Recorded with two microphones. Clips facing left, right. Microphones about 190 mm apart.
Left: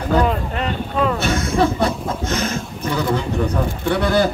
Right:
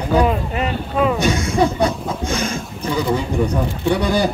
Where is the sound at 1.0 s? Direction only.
15° right (ahead or behind).